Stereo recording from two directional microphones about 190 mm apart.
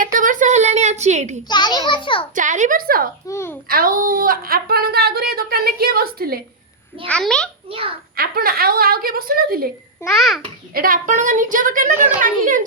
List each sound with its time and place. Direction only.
0.0 s a woman's voice: 45° right (ahead or behind)
1.5 s a child's voice: 25° left (ahead or behind)
2.3 s a woman's voice: 40° right (ahead or behind)
3.2 s a child's voice: 15° left (ahead or behind)
3.7 s a woman's voice: 50° right (ahead or behind)
7.1 s a child's voice: 5° left (ahead or behind)
8.1 s a woman's voice: 50° right (ahead or behind)
10.1 s a child's voice: centre (ahead or behind)
10.8 s a woman's voice: 45° right (ahead or behind)